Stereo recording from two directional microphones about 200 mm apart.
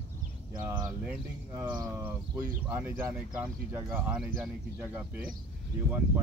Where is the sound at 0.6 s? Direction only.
15° right (ahead or behind).